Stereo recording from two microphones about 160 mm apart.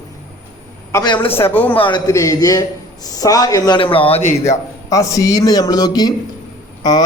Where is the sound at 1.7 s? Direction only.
35° left (ahead or behind).